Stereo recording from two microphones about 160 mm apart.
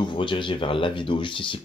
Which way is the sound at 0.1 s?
30° left (ahead or behind).